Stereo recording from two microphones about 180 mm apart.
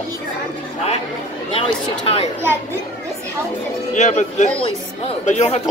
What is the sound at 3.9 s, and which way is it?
Speech, 40° left (ahead or behind).